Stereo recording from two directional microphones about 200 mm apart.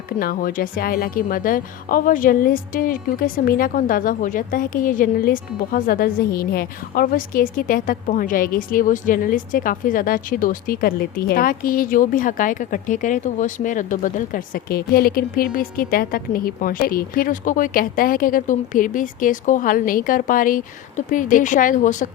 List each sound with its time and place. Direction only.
0.2 s a woman's voice: 45° left (ahead or behind)